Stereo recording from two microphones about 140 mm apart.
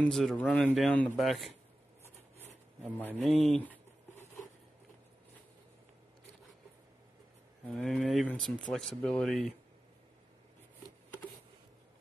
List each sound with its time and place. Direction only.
0.0 s speech: 5° left (ahead or behind)
3.3 s speech: 50° left (ahead or behind)
3.5 s a sound: 10° left (ahead or behind)
7.6 s speech: centre (ahead or behind)